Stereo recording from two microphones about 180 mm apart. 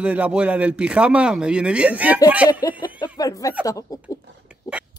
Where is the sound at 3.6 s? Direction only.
20° left (ahead or behind).